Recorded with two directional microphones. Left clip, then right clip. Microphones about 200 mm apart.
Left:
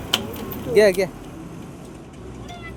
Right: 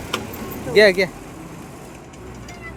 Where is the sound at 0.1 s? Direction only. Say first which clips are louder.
Left 4 dB; 35° left (ahead or behind).